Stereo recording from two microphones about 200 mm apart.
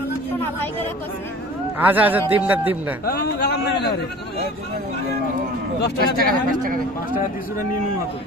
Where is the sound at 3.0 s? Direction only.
50° left (ahead or behind).